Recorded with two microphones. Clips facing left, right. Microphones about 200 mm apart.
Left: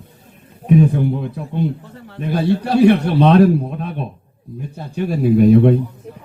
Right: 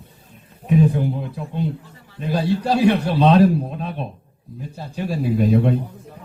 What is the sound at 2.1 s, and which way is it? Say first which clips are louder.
A man's voice: left 3 dB; 60° left (ahead or behind).